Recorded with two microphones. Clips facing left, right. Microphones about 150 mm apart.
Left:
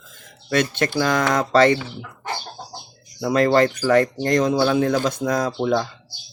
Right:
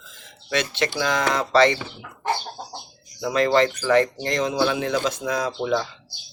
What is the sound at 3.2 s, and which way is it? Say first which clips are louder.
Speech: left 2 dB; 45° left (ahead or behind).